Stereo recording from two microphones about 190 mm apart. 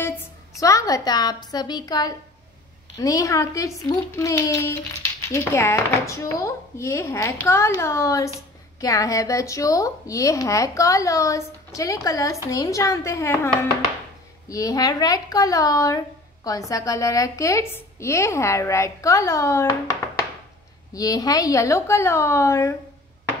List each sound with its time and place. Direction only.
0.0 s a woman's voice: 15° left (ahead or behind)
14.5 s a woman's voice: 20° left (ahead or behind)